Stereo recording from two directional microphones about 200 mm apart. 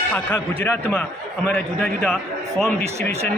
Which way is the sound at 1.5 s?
Centre (ahead or behind).